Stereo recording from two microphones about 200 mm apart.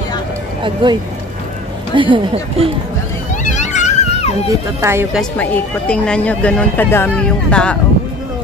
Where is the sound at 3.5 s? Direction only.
35° left (ahead or behind).